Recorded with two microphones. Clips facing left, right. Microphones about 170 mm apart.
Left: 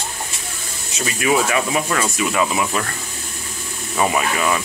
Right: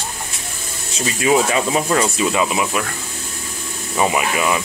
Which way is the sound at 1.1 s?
25° right (ahead or behind).